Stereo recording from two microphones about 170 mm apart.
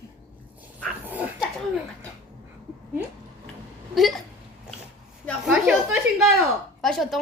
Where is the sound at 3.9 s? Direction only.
Centre (ahead or behind).